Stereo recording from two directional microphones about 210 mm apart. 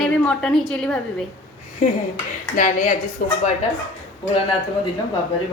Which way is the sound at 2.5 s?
40° left (ahead or behind).